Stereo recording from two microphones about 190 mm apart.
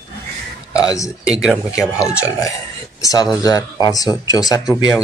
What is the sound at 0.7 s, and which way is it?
Speech, 20° left (ahead or behind).